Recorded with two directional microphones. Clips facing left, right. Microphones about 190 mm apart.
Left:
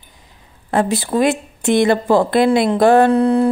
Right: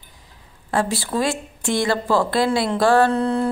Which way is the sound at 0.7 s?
20° left (ahead or behind).